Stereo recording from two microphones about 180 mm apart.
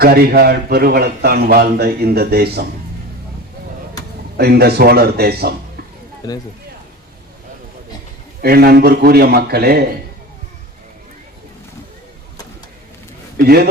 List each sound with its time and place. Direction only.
0.0 s a man's voice: 60° right (ahead or behind)
4.4 s a man's voice: 60° right (ahead or behind)
8.4 s a man's voice: 60° right (ahead or behind)
13.3 s speech: 60° right (ahead or behind)